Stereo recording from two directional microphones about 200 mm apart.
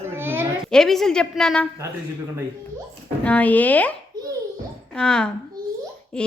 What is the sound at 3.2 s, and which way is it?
Speech, 5° left (ahead or behind).